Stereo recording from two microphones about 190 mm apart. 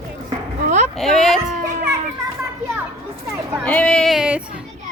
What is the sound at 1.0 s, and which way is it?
Speech, centre (ahead or behind).